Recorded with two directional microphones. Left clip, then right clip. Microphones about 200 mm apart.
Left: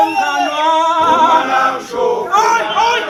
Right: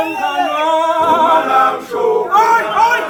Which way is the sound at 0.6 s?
45° right (ahead or behind).